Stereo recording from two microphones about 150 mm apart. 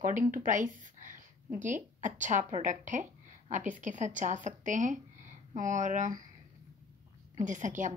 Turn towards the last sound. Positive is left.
turn(degrees=-55)  # may be behind; listen again after turning